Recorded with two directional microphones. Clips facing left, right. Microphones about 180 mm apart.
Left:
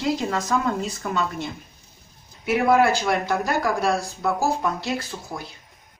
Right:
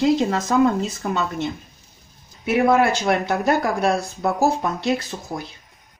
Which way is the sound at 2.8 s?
25° right (ahead or behind).